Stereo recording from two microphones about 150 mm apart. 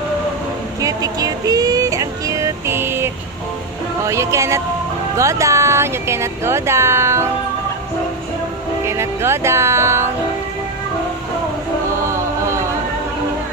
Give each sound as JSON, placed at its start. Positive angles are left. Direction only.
{"t": 0.7, "sound": "music", "side_deg": -25}
{"t": 4.0, "sound": "speech", "side_deg": -20}
{"t": 8.8, "sound": "speech", "side_deg": -20}
{"t": 12.0, "sound": "music", "side_deg": -20}